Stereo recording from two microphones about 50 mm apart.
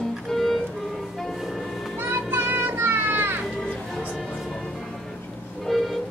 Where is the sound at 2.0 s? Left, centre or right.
Right.